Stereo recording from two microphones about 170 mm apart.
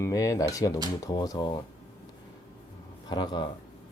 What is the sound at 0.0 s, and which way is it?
Speech, 20° left (ahead or behind).